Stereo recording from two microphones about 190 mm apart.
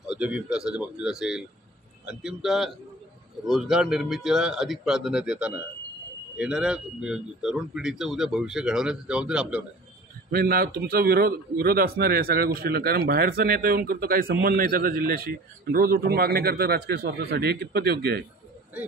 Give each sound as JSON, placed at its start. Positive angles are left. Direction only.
{"t": 0.0, "sound": "speech", "side_deg": -5}
{"t": 10.3, "sound": "a man's voice", "side_deg": -55}